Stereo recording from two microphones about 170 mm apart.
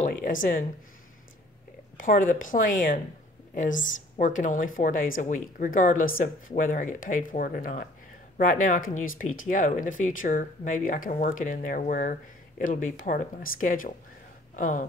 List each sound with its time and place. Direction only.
0.0 s speech: 50° left (ahead or behind)
2.0 s speech: 55° left (ahead or behind)